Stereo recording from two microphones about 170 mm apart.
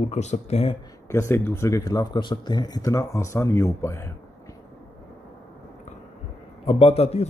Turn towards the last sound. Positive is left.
turn(degrees=35)  # may be behind; listen again after turning